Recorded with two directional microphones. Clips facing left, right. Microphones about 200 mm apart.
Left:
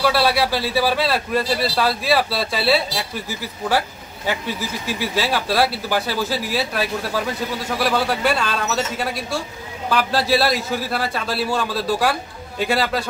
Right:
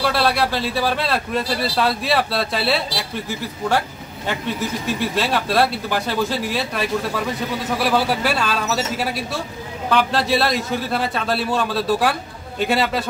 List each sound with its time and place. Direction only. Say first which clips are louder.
0.0 s a man's voice: left 1 dB; 5° left (ahead or behind)
4.3 s a man's voice: right 1 dB; 5° left (ahead or behind)